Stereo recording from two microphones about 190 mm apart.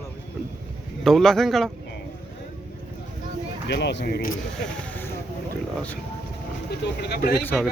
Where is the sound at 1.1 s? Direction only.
Centre (ahead or behind).